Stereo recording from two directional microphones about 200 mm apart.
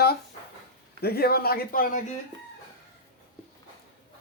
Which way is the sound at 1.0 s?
50° left (ahead or behind).